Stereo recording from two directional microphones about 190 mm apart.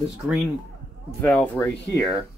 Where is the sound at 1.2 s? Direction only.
10° left (ahead or behind).